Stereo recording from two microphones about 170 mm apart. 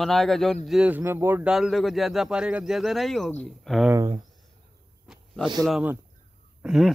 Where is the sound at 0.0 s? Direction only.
Centre (ahead or behind).